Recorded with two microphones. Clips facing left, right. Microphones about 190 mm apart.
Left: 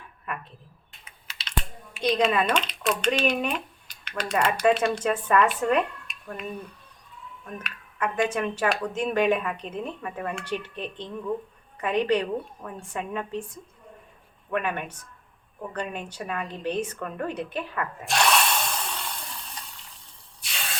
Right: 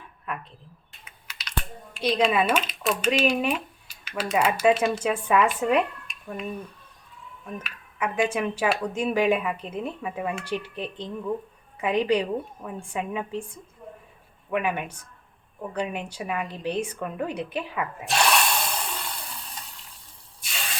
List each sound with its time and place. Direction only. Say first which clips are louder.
0.3 s speech: right 1 dB; centre (ahead or behind)
1.3 s typing: right 1 dB; 25° left (ahead or behind)
2.0 s speech: right 1 dB; centre (ahead or behind)
14.5 s speech: right 2 dB; 10° right (ahead or behind)
20.4 s spray: right 1 dB; centre (ahead or behind)